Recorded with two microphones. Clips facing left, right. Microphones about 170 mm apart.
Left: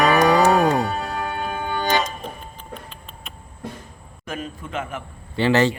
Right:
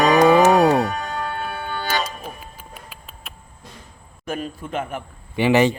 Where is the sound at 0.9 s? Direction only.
25° left (ahead or behind).